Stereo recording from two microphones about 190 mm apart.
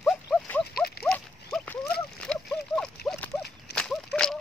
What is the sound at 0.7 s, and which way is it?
Horse, 55° left (ahead or behind).